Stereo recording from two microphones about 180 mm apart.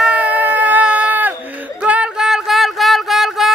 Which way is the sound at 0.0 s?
5° right (ahead or behind).